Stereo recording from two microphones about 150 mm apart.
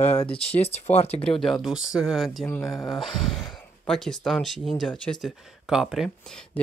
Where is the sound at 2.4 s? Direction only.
20° left (ahead or behind).